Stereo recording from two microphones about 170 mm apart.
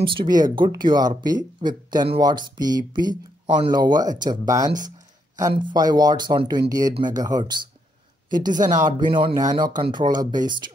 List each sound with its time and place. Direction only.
0.0 s speech: 30° right (ahead or behind)
8.5 s speech: 50° right (ahead or behind)
9.1 s speech: 25° right (ahead or behind)